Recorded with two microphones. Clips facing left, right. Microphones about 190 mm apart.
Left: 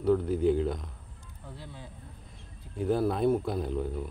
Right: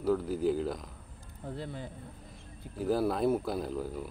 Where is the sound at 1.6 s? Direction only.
60° right (ahead or behind).